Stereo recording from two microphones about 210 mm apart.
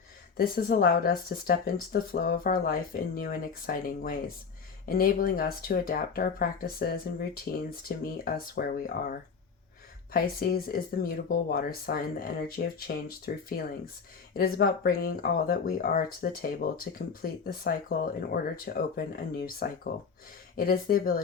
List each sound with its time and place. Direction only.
0.3 s speech: 45° left (ahead or behind)
7.5 s speech: 55° left (ahead or behind)